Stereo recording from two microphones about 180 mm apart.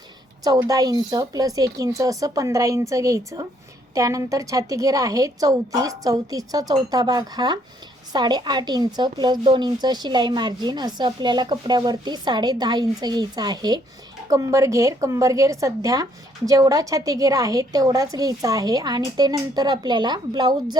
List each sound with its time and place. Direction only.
0.4 s a woman's voice: 20° right (ahead or behind)